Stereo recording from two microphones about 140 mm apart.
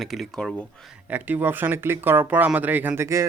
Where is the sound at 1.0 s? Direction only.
10° right (ahead or behind).